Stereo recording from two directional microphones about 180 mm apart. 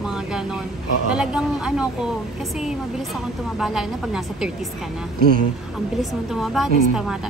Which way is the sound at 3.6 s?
Centre (ahead or behind).